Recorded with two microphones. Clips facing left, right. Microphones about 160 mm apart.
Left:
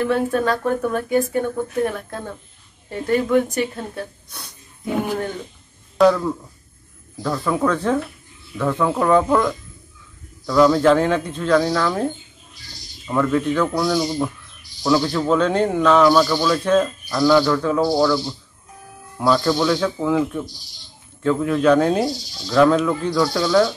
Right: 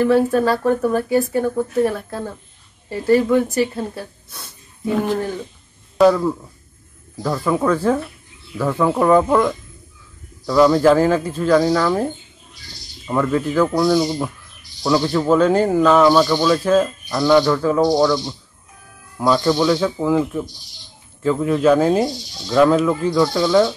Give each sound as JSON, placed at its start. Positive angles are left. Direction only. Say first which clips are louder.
{"t": 0.0, "sound": "speech", "louder": "right 4 dB", "side_deg": -5}
{"t": 4.9, "sound": "speech", "louder": "right 3 dB", "side_deg": 10}
{"t": 5.9, "sound": "speech", "louder": "right 2 dB", "side_deg": -10}
{"t": 16.6, "sound": "speech", "louder": "right 1 dB", "side_deg": -5}
{"t": 17.2, "sound": "speech", "louder": "right 1 dB", "side_deg": -15}
{"t": 19.1, "sound": "speech", "louder": "right 1 dB", "side_deg": -5}